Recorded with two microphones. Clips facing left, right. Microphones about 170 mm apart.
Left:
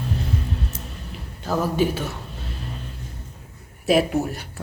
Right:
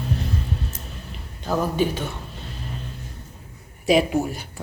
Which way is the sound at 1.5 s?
5° left (ahead or behind).